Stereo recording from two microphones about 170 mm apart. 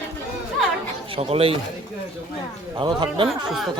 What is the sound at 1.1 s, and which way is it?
Speech, 35° right (ahead or behind).